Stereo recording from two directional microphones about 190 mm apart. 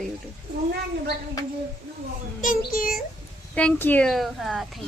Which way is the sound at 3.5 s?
5° left (ahead or behind).